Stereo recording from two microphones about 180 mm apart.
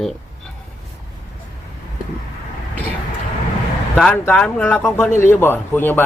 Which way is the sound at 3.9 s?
5° left (ahead or behind).